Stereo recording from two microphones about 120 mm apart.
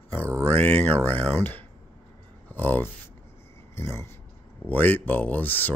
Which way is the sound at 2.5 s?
15° left (ahead or behind).